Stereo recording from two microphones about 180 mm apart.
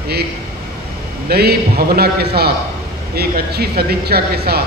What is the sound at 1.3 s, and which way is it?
A man's voice, 60° right (ahead or behind).